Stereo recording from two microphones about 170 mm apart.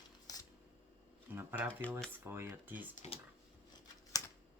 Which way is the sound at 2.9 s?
40° left (ahead or behind).